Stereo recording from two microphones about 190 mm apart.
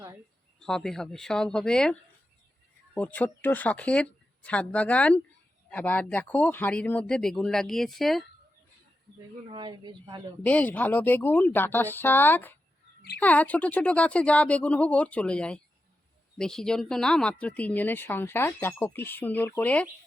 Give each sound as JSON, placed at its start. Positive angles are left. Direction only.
{"t": 0.6, "sound": "speech", "side_deg": 0}
{"t": 9.5, "sound": "speech", "side_deg": -25}
{"t": 10.4, "sound": "speech", "side_deg": 10}